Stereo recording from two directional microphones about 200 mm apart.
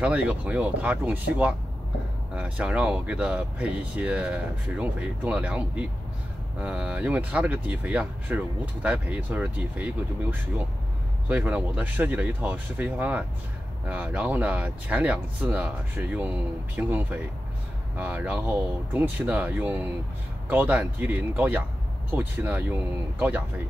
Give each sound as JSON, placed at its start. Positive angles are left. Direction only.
{"t": 0.0, "sound": "speech", "side_deg": -5}
{"t": 11.2, "sound": "speech", "side_deg": -5}